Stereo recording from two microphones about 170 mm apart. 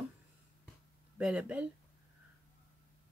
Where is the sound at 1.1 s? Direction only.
5° right (ahead or behind).